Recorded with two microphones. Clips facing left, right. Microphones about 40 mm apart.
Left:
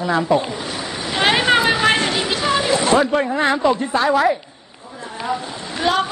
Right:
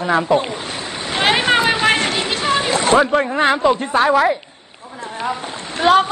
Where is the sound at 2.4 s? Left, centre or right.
Right.